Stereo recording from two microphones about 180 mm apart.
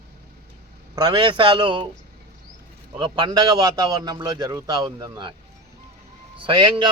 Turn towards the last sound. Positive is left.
turn(degrees=-25)  # may be behind; listen again after turning